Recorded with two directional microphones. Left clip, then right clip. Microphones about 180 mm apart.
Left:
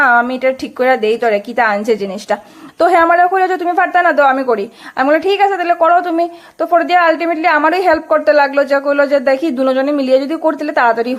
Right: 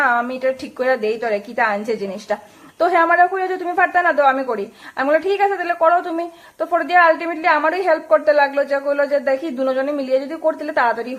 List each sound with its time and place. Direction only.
0.0 s a woman's voice: 35° left (ahead or behind)